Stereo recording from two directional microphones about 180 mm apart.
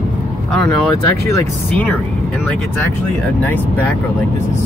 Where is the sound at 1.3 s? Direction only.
15° left (ahead or behind).